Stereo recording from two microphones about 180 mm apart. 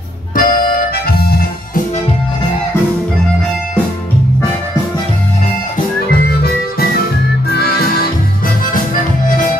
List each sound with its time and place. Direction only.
0.4 s harmonica: 50° left (ahead or behind)
7.4 s music: 60° left (ahead or behind)